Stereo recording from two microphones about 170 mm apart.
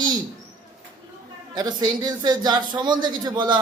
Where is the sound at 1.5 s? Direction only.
25° right (ahead or behind).